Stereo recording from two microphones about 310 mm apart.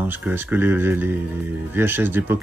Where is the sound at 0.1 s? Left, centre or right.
Centre.